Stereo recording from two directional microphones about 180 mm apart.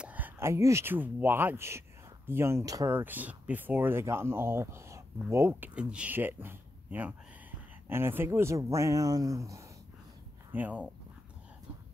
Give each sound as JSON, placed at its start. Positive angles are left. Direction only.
{"t": 0.0, "sound": "speech", "side_deg": -10}